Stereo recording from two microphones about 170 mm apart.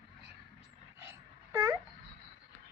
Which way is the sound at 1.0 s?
15° right (ahead or behind).